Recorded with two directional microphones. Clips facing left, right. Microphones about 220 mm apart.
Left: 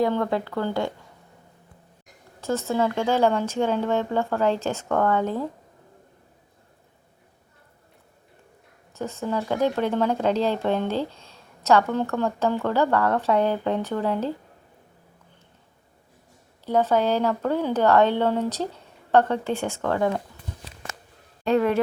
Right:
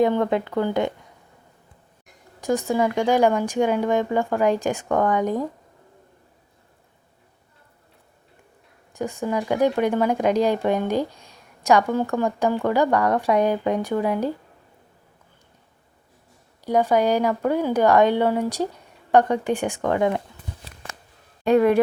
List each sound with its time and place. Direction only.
0.0 s speech: 20° right (ahead or behind)
2.4 s speech: 15° right (ahead or behind)
8.9 s speech: 15° right (ahead or behind)
16.6 s speech: 15° right (ahead or behind)
21.4 s speech: 15° right (ahead or behind)